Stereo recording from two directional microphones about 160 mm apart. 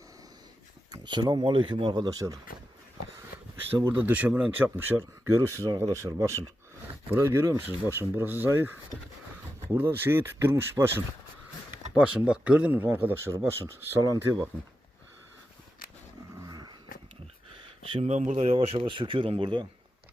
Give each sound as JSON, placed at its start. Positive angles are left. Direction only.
{"t": 0.9, "sound": "speech", "side_deg": -30}
{"t": 3.8, "sound": "speech", "side_deg": -10}
{"t": 16.5, "sound": "dog", "side_deg": -25}
{"t": 17.9, "sound": "speech", "side_deg": -45}